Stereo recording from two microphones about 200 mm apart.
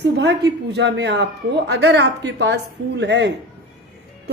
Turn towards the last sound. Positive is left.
turn(degrees=-60)  # may be behind; listen again after turning